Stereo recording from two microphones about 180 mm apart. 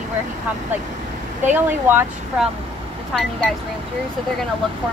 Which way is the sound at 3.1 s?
5° left (ahead or behind).